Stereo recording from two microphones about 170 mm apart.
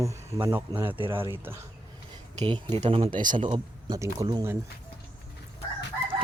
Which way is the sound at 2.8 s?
35° right (ahead or behind).